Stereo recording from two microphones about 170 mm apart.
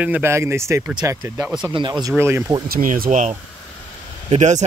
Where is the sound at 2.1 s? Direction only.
15° right (ahead or behind).